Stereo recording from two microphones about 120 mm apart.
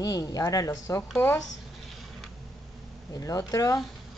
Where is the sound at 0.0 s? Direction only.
30° left (ahead or behind).